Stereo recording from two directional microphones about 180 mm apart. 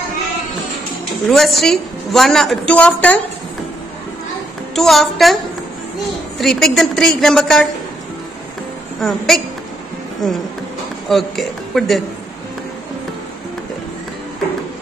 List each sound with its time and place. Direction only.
1.3 s a woman's voice: centre (ahead or behind)
4.7 s a woman's voice: centre (ahead or behind)
9.0 s a woman's voice: centre (ahead or behind)
11.1 s a woman's voice: centre (ahead or behind)